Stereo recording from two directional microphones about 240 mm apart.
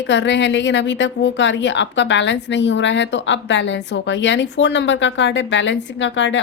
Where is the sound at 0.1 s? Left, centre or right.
Left.